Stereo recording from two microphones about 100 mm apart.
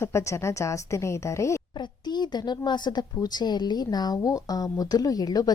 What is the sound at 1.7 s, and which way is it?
Speech, 45° left (ahead or behind).